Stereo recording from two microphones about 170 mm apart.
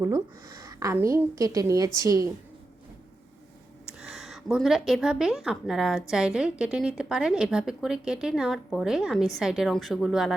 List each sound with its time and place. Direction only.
0.0 s a woman's voice: 15° right (ahead or behind)
4.0 s a woman's voice: centre (ahead or behind)